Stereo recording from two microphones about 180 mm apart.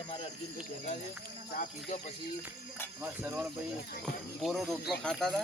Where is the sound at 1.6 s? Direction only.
40° left (ahead or behind).